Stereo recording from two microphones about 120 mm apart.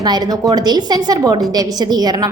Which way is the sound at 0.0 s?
35° right (ahead or behind).